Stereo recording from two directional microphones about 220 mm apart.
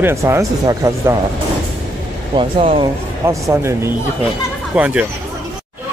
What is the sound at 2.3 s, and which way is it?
Speech, 25° right (ahead or behind).